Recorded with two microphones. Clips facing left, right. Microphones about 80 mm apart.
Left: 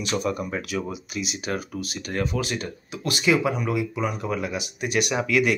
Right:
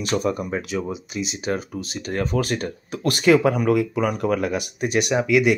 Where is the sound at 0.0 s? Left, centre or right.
Right.